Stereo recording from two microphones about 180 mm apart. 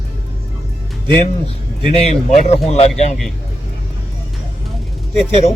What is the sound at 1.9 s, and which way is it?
Speech, 35° left (ahead or behind).